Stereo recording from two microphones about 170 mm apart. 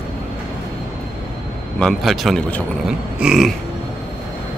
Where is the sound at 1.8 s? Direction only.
Centre (ahead or behind).